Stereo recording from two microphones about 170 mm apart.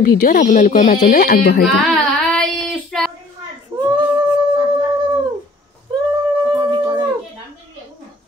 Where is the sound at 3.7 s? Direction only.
20° right (ahead or behind).